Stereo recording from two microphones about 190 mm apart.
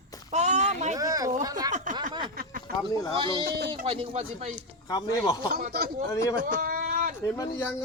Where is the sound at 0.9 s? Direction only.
20° right (ahead or behind).